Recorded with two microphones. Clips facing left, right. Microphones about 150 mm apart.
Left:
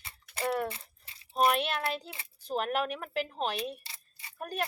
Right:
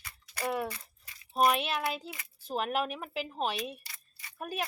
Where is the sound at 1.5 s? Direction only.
5° right (ahead or behind).